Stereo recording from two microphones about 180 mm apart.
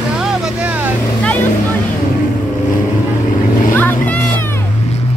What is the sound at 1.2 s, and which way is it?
Vehicle, 10° left (ahead or behind).